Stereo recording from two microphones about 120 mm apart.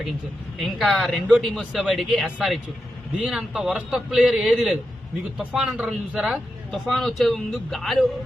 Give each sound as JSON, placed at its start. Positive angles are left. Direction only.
{"t": 0.6, "sound": "speech", "side_deg": 0}